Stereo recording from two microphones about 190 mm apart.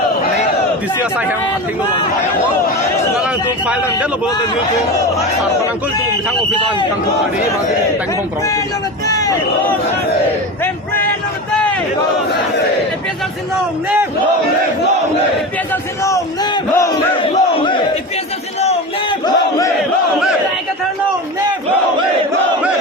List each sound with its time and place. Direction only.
9.0 s speech: 20° left (ahead or behind)
15.7 s battle cry: 15° left (ahead or behind)
19.2 s battle cry: 20° left (ahead or behind)